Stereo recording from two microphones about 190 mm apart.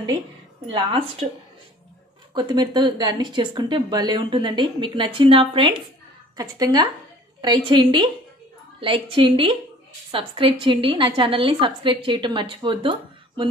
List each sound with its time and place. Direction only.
0.7 s a woman's voice: 30° right (ahead or behind)
2.3 s speech: 25° right (ahead or behind)